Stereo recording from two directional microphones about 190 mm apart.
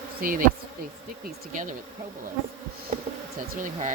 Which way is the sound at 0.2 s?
50° right (ahead or behind).